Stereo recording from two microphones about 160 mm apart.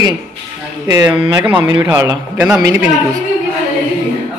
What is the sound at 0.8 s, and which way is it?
Speech, 25° right (ahead or behind).